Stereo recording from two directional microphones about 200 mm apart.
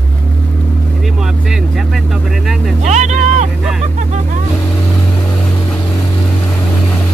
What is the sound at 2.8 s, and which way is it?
Vehicle, 35° right (ahead or behind).